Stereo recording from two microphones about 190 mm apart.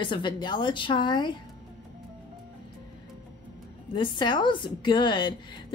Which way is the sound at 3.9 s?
25° left (ahead or behind).